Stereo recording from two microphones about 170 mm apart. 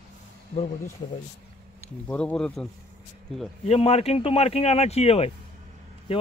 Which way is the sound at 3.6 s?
35° left (ahead or behind).